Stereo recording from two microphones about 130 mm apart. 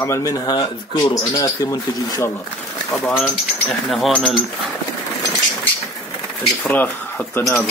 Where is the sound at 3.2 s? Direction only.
Centre (ahead or behind).